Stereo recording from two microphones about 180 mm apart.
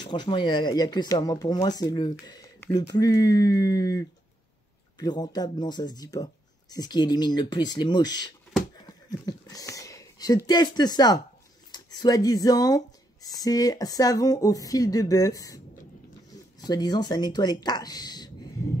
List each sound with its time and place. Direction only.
0.0 s speech: 25° left (ahead or behind)